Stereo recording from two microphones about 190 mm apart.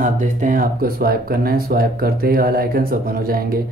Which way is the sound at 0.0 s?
45° right (ahead or behind).